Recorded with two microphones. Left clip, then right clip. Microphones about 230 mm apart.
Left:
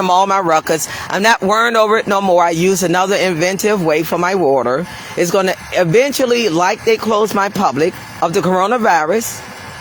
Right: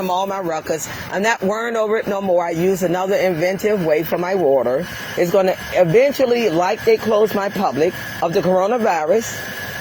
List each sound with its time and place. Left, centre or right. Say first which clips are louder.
0.0 s speech: left 8 dB; left